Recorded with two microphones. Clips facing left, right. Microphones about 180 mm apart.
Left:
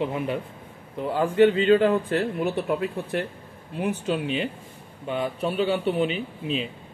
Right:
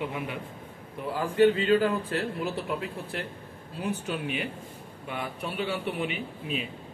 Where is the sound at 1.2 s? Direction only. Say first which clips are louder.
Left 3 dB; 30° left (ahead or behind).